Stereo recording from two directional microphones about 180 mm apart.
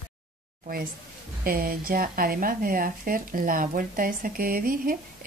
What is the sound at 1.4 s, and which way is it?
Speech, 55° right (ahead or behind).